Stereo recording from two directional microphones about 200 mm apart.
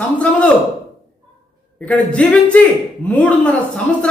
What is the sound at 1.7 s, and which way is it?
Speech, 5° left (ahead or behind).